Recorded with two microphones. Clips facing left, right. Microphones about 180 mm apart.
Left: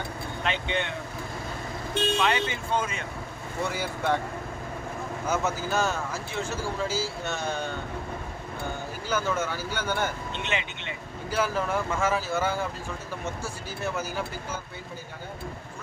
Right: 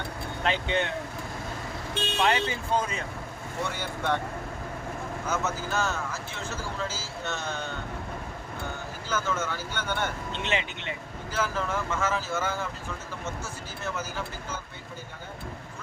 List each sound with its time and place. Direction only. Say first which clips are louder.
0.4 s speech: right 2 dB; 40° right (ahead or behind)
2.2 s speech: right 1 dB; 35° right (ahead or behind)
3.6 s speech: left 3 dB; 5° left (ahead or behind)
5.3 s speech: left 3 dB; 15° left (ahead or behind)
9.0 s speech: left 2 dB; 10° left (ahead or behind)
10.4 s speech: right 2 dB; 35° right (ahead or behind)
11.3 s speech: left 3 dB; 10° left (ahead or behind)